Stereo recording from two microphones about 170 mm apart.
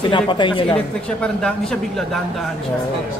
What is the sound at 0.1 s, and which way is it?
Speech, 30° left (ahead or behind).